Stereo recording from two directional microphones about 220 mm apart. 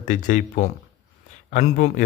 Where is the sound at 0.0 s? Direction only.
35° left (ahead or behind).